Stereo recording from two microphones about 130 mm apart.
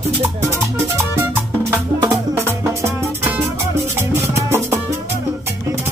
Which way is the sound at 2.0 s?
25° right (ahead or behind).